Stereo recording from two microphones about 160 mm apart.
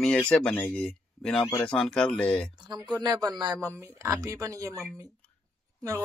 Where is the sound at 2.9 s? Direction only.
25° right (ahead or behind).